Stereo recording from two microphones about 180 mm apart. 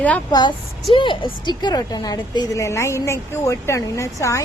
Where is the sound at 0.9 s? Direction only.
25° left (ahead or behind).